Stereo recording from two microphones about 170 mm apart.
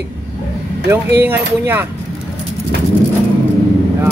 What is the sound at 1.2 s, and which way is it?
Speech, 15° right (ahead or behind).